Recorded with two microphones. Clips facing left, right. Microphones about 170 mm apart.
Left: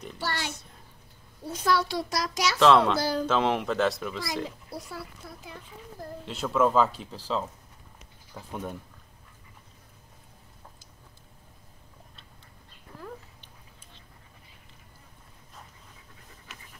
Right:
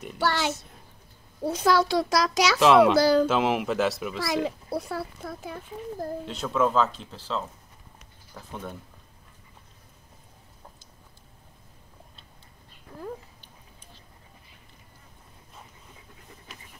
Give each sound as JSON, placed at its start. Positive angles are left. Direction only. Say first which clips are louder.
{"t": 0.2, "sound": "a child's voice", "louder": "right 8 dB", "side_deg": -90}
{"t": 1.4, "sound": "a child's voice", "louder": "right 4 dB", "side_deg": -80}
{"t": 2.6, "sound": "a child's voice", "louder": "right 2 dB", "side_deg": -10}
{"t": 3.0, "sound": "a child's voice", "louder": "right 9 dB", "side_deg": -90}
{"t": 3.3, "sound": "speech", "louder": "right 1 dB", "side_deg": -5}
{"t": 4.2, "sound": "a child's voice", "louder": "right 6 dB", "side_deg": -70}
{"t": 6.2, "sound": "speech", "louder": "left 2 dB", "side_deg": 5}